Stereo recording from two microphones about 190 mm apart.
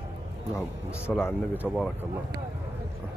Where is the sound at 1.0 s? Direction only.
10° left (ahead or behind).